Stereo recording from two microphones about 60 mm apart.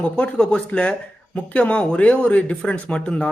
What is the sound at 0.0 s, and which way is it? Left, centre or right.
Speech, left.